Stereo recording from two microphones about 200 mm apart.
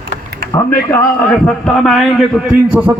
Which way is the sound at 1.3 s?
5° left (ahead or behind).